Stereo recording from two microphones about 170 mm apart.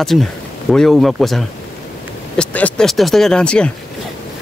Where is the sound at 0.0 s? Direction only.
Centre (ahead or behind).